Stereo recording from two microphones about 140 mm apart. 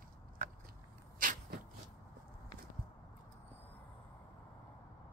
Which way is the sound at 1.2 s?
75° right (ahead or behind).